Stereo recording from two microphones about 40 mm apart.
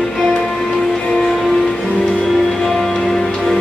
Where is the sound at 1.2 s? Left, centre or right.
Centre.